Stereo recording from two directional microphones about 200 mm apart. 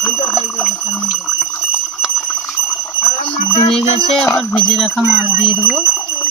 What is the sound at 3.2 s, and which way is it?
Speech, 25° left (ahead or behind).